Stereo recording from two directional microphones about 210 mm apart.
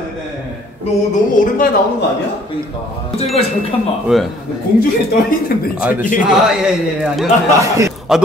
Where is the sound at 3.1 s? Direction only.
30° left (ahead or behind).